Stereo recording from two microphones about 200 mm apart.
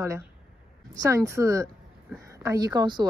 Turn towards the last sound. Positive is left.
turn(degrees=-20)  # may be behind; listen again after turning